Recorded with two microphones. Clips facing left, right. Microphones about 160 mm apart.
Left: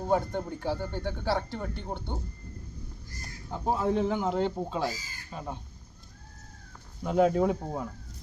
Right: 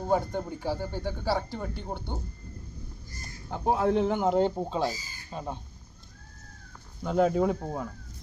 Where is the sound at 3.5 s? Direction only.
65° right (ahead or behind); by 4.5 s 45° right (ahead or behind).